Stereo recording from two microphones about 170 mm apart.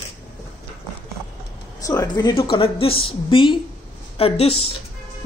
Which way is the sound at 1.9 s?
20° left (ahead or behind).